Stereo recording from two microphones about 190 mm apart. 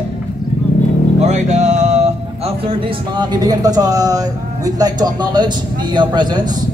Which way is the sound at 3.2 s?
20° right (ahead or behind).